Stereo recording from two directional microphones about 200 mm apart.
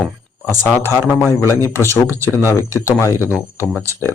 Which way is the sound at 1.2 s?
15° left (ahead or behind).